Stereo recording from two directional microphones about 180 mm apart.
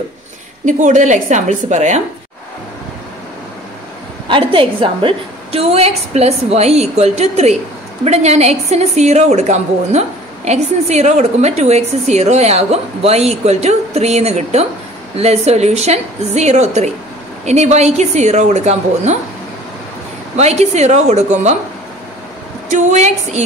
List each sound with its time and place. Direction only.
0.7 s a woman's voice: 45° right (ahead or behind)
4.3 s a woman's voice: 30° right (ahead or behind)
20.3 s a woman's voice: 40° right (ahead or behind)
22.7 s a woman's voice: 40° right (ahead or behind)